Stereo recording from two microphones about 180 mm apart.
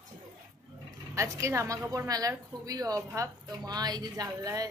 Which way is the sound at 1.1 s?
15° right (ahead or behind).